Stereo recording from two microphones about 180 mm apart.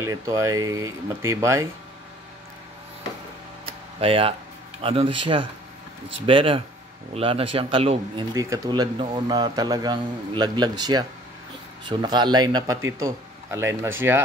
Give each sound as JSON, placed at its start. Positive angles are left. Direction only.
{"t": 0.0, "sound": "speech", "side_deg": -15}
{"t": 3.6, "sound": "a sound", "side_deg": -30}
{"t": 4.8, "sound": "a man's voice", "side_deg": -30}
{"t": 8.4, "sound": "a man's voice", "side_deg": -20}